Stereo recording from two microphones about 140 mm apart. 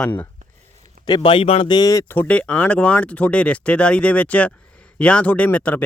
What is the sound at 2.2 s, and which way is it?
Speech, 10° left (ahead or behind).